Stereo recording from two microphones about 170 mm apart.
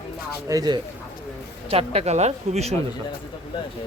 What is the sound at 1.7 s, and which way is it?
Speech, 35° right (ahead or behind).